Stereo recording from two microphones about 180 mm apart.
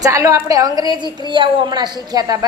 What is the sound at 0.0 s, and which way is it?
A woman's voice, 20° right (ahead or behind).